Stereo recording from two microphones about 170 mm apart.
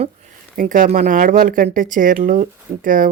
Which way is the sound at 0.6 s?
50° right (ahead or behind).